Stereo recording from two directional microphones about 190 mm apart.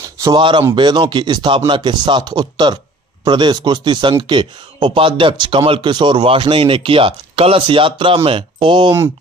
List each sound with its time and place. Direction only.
0.0 s speech: 20° right (ahead or behind)